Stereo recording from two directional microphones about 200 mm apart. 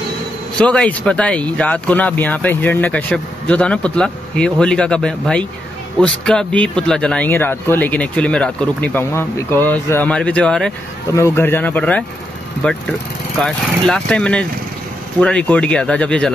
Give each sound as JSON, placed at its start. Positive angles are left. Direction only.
{"t": 0.6, "sound": "a man's voice", "side_deg": 5}